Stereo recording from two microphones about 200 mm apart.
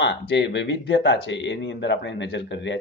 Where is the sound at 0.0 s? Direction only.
60° left (ahead or behind).